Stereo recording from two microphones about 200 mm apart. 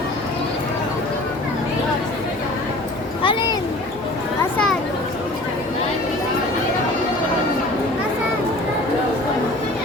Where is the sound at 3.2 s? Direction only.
25° left (ahead or behind).